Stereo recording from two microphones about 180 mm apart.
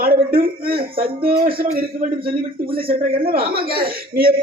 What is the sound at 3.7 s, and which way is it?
Speech, 55° right (ahead or behind).